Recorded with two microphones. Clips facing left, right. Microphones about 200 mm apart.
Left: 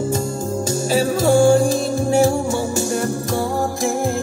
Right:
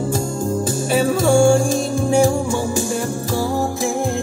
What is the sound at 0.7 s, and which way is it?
Music, 55° right (ahead or behind).